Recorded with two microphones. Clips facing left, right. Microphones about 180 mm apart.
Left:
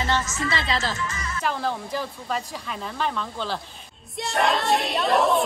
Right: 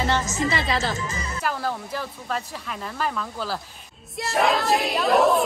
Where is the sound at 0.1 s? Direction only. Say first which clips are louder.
Right 2 dB; 20° right (ahead or behind).